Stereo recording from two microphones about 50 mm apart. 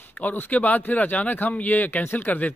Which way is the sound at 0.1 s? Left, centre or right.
Left.